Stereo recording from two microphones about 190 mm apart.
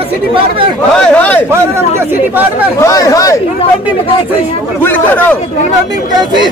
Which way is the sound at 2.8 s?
15° left (ahead or behind).